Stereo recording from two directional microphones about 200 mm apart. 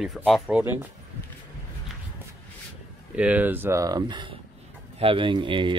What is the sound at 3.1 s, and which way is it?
Speech, 10° right (ahead or behind).